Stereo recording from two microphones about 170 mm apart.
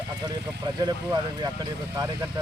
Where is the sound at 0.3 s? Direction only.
25° right (ahead or behind).